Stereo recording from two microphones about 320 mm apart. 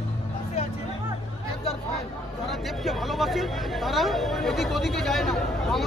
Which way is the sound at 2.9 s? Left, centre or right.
Centre.